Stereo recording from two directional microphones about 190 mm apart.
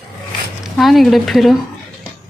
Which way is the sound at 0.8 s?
Centre (ahead or behind).